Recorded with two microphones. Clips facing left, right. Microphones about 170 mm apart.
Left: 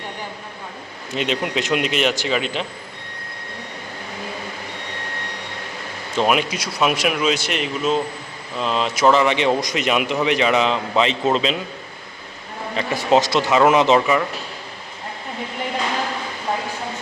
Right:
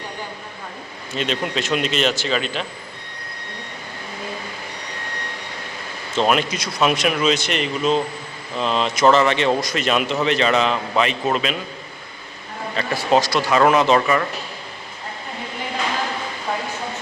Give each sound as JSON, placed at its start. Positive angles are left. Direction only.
{"t": 1.1, "sound": "speech", "side_deg": 15}
{"t": 6.1, "sound": "speech", "side_deg": 10}
{"t": 12.7, "sound": "speech", "side_deg": 20}